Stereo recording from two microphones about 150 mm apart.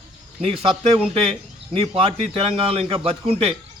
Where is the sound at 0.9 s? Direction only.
40° right (ahead or behind).